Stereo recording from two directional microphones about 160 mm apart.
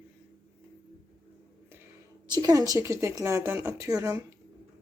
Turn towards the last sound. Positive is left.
turn(degrees=-20)  # may be behind; listen again after turning